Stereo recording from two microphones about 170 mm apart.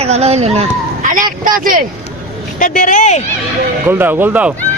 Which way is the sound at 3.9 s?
10° right (ahead or behind).